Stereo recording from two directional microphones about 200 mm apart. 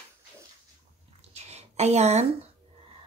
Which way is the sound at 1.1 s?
30° right (ahead or behind).